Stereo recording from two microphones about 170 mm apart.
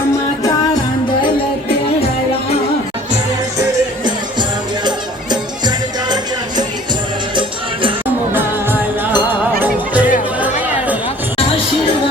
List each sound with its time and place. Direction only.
3.6 s music: 25° right (ahead or behind)
7.3 s music: 30° right (ahead or behind)
9.1 s music: 10° right (ahead or behind)